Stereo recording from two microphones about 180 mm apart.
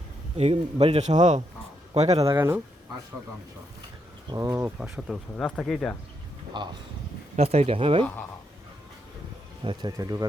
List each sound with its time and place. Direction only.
0.3 s a man's voice: 35° right (ahead or behind)
2.2 s speech: 15° right (ahead or behind)
4.3 s speech: 20° right (ahead or behind)
4.8 s speech: centre (ahead or behind)
6.5 s speech: 25° right (ahead or behind)
7.3 s a man's voice: 35° right (ahead or behind)
9.6 s speech: 20° right (ahead or behind)